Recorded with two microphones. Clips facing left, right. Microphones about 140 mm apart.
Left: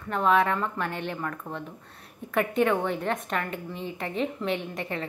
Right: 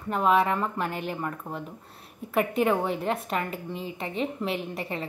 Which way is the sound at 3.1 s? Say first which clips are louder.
Right 1 dB; 30° right (ahead or behind).